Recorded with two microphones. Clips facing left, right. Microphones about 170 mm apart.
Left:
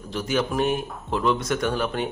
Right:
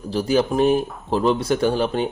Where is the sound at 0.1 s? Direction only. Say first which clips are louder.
Right 5 dB; 35° right (ahead or behind).